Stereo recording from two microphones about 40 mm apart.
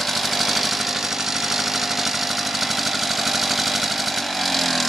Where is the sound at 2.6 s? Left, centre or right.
Centre.